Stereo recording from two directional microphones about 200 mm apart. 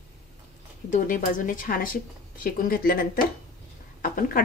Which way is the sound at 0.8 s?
40° left (ahead or behind).